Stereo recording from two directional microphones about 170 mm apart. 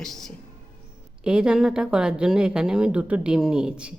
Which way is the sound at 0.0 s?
Centre (ahead or behind).